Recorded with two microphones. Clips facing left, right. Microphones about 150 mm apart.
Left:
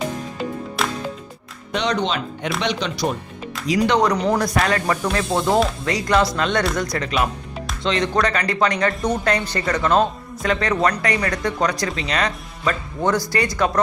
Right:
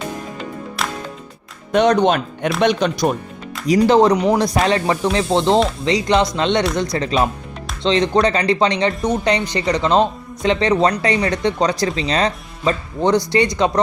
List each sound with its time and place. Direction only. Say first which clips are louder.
0.8 s music: left 1 dB; centre (ahead or behind)
1.7 s speech: right 8 dB; 50° right (ahead or behind)
3.7 s speech: right 5 dB; 30° right (ahead or behind)
8.9 s speech: right 2 dB; centre (ahead or behind)
9.2 s speech: right 3 dB; 15° right (ahead or behind)